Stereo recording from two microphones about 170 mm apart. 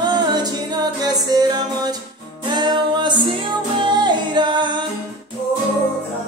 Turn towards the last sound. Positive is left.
turn(degrees=-25)  # may be behind; listen again after turning